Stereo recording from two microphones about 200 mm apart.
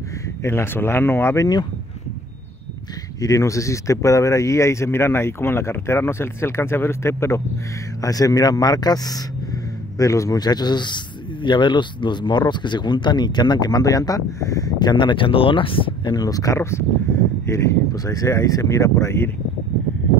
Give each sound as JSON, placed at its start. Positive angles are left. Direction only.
{"t": 0.4, "sound": "speech", "side_deg": 15}
{"t": 3.2, "sound": "speech", "side_deg": 15}